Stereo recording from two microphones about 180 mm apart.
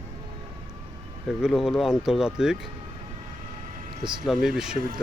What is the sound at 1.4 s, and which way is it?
Speech, centre (ahead or behind).